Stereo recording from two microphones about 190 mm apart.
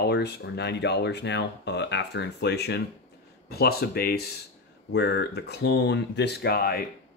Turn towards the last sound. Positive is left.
turn(degrees=55)  # may be behind; listen again after turning